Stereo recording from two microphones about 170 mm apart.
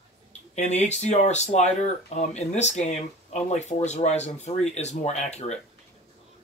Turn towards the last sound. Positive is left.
turn(degrees=40)  # may be behind; listen again after turning